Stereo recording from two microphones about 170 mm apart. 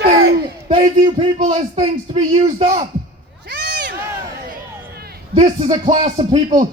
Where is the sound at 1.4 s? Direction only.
45° right (ahead or behind).